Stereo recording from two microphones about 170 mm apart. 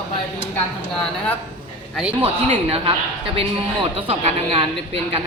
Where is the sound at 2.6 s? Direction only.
35° right (ahead or behind).